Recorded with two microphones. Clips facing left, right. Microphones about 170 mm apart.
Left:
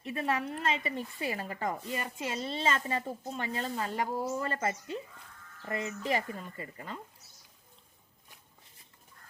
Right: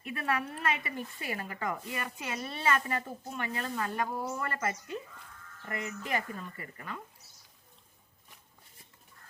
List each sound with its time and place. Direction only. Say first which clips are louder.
0.0 s speech: left 1 dB; 25° left (ahead or behind)